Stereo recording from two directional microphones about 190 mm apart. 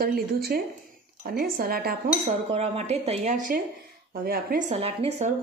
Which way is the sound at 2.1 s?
35° right (ahead or behind).